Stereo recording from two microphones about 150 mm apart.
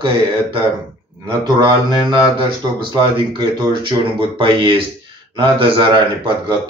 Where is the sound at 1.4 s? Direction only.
30° right (ahead or behind).